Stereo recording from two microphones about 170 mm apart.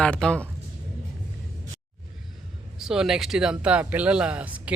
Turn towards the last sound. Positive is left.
turn(degrees=-10)  # may be behind; listen again after turning